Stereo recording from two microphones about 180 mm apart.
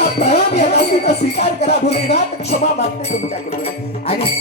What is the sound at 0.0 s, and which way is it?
Music, 35° left (ahead or behind).